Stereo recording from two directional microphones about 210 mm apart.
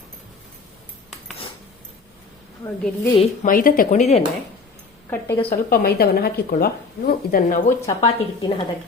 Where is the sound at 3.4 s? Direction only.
40° left (ahead or behind).